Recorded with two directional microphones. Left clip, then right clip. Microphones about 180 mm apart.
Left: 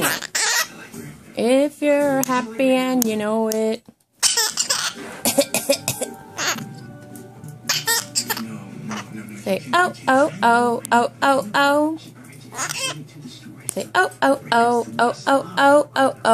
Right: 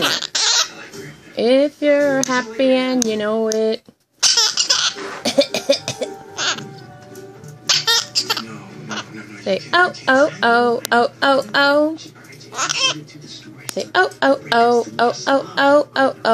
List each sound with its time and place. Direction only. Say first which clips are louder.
0.0 s goat: right 4 dB; 15° left (ahead or behind)
1.3 s speech: right 3 dB; 5° right (ahead or behind)
4.2 s cough: right 5 dB; 10° left (ahead or behind)
5.2 s cough: right 3 dB; centre (ahead or behind)
6.3 s music: right 2 dB; 20° left (ahead or behind)
7.6 s laughter: right 6 dB; 5° left (ahead or behind)
9.4 s speech: right 3 dB; 5° right (ahead or behind)
12.5 s a sound: right 7 dB; 5° left (ahead or behind)
13.7 s speech: right 2 dB; 5° right (ahead or behind)